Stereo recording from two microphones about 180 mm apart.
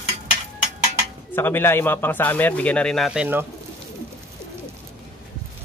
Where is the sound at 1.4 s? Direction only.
15° left (ahead or behind); by 3.4 s 5° right (ahead or behind).